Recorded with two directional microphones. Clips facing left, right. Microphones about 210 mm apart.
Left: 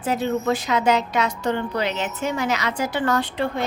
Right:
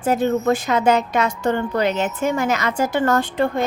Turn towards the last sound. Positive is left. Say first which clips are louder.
# right 4 dB
turn(degrees=-45)  # may be behind; listen again after turning